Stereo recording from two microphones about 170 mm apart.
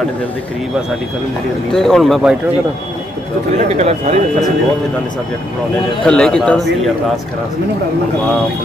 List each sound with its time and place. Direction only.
1.7 s speech: 5° left (ahead or behind)
3.5 s speech: 40° right (ahead or behind)
6.0 s speech: 5° left (ahead or behind)